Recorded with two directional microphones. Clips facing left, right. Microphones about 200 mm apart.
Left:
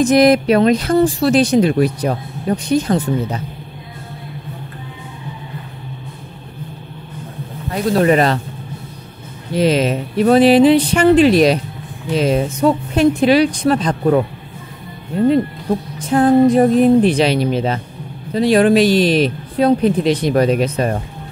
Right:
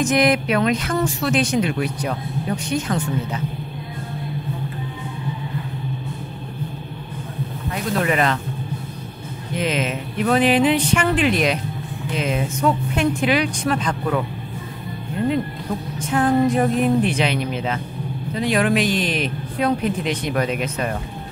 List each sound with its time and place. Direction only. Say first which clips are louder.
0.0 s speech: left 7 dB; 35° left (ahead or behind)
7.7 s speech: left 8 dB; 35° left (ahead or behind)
9.5 s speech: left 8 dB; 35° left (ahead or behind)
16.0 s speech: left 6 dB; 35° left (ahead or behind)